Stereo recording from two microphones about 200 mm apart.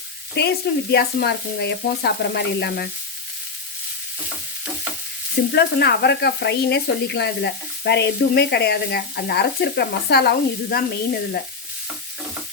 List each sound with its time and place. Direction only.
0.3 s speech: 55° left (ahead or behind)
5.5 s speech: 55° left (ahead or behind)